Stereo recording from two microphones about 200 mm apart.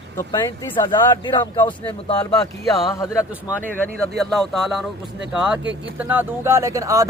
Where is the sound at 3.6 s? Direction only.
5° left (ahead or behind).